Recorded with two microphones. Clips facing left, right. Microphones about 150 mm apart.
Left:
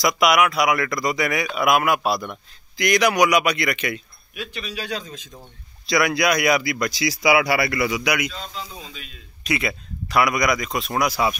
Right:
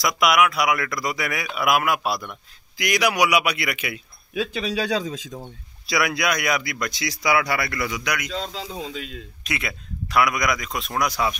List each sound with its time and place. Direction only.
0.0 s a man's voice: centre (ahead or behind)
4.8 s speech: 90° right
5.9 s speech: 5° right (ahead or behind)
8.3 s speech: 90° right
9.4 s speech: centre (ahead or behind)